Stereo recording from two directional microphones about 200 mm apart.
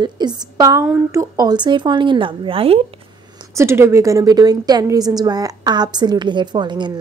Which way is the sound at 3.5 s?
15° right (ahead or behind).